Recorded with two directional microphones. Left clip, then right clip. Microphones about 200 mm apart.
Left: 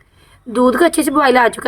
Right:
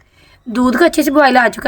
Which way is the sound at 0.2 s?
45° right (ahead or behind).